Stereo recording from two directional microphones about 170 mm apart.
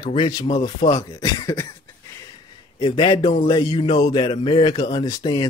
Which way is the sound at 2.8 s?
25° left (ahead or behind).